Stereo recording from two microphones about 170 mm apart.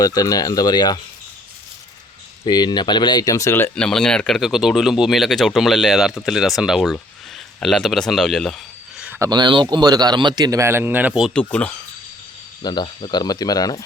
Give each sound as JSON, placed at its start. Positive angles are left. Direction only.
{"t": 0.0, "sound": "speech", "side_deg": 20}
{"t": 2.4, "sound": "speech", "side_deg": 25}
{"t": 9.0, "sound": "speech", "side_deg": -15}
{"t": 11.3, "sound": "speech", "side_deg": 5}
{"t": 12.6, "sound": "speech", "side_deg": 30}